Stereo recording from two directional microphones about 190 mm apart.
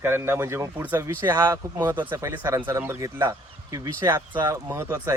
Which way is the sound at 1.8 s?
20° right (ahead or behind).